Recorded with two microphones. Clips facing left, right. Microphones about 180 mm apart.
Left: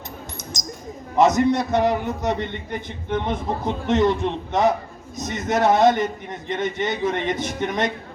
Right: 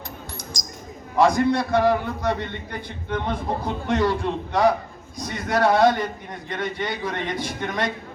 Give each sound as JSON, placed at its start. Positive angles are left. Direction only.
{"t": 1.1, "sound": "a man's voice", "side_deg": 20}